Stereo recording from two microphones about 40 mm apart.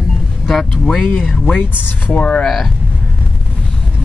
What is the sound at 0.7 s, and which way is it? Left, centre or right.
Speech, centre.